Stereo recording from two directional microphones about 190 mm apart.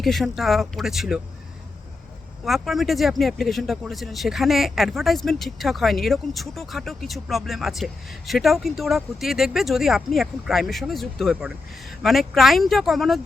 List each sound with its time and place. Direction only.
0.0 s speech: centre (ahead or behind)
2.4 s speech: centre (ahead or behind)